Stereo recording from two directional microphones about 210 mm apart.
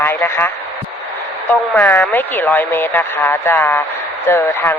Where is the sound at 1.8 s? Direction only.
10° left (ahead or behind).